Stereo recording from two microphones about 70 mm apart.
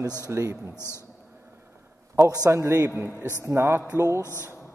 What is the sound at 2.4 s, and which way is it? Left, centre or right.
Speech, right.